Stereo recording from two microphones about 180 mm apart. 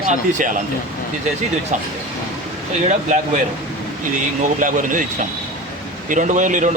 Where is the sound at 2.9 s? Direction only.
45° right (ahead or behind).